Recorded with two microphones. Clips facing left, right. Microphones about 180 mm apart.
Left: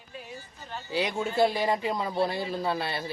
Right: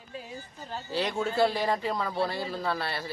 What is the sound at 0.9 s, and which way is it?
A man's voice, 15° left (ahead or behind).